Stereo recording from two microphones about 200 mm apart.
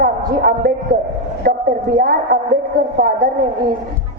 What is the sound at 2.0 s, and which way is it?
Speech, 45° right (ahead or behind).